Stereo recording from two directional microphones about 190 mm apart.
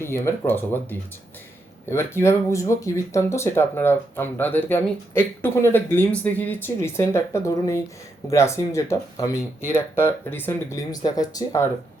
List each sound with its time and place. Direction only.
0.0 s speech: 15° left (ahead or behind)